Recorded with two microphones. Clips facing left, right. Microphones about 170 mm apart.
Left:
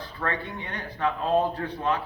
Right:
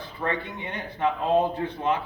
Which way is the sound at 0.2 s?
20° right (ahead or behind).